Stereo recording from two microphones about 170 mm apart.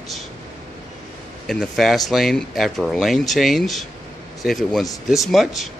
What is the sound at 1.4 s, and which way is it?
Speech, centre (ahead or behind).